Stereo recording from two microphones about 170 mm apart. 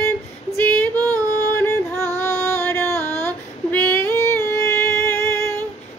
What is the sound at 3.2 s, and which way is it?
Child singing, 10° left (ahead or behind).